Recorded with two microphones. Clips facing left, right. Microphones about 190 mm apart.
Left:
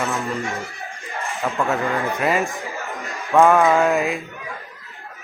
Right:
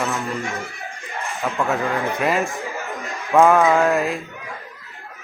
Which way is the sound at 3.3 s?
Centre (ahead or behind).